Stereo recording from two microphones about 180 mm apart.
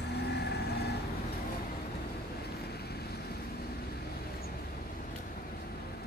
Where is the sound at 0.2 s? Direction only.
65° left (ahead or behind).